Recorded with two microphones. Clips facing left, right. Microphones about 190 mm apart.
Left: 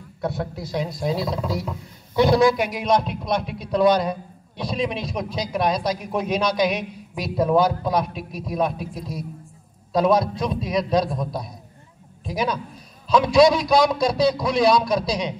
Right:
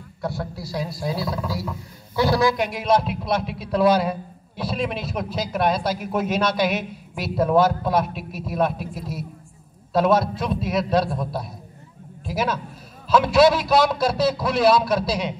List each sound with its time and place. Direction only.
0.2 s speech: 20° left (ahead or behind)
2.4 s a man's voice: centre (ahead or behind)
12.3 s a man's voice: 5° right (ahead or behind)